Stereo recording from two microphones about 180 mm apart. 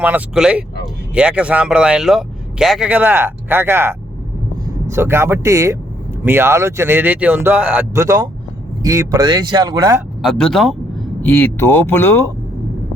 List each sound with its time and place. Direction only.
0.0 s speech: 5° right (ahead or behind)
10.2 s speech: 5° left (ahead or behind)